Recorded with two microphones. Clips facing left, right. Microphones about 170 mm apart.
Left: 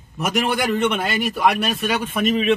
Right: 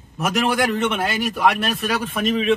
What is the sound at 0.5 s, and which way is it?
A man's voice, centre (ahead or behind).